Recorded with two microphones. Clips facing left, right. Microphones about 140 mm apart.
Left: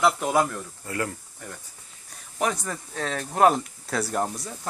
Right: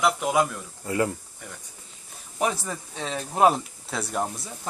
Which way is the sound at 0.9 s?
20° right (ahead or behind).